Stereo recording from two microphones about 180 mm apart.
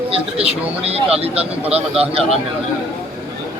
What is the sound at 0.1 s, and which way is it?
Speech, 35° right (ahead or behind).